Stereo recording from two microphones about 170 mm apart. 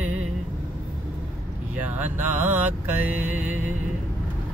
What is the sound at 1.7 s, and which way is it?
Speech, 10° right (ahead or behind).